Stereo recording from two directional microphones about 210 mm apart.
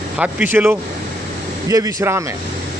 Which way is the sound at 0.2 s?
10° right (ahead or behind).